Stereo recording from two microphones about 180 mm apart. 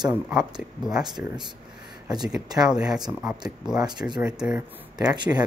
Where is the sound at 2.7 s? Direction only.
5° right (ahead or behind).